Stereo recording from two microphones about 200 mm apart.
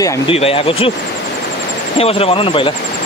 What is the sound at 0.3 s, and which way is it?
Speech, 30° left (ahead or behind).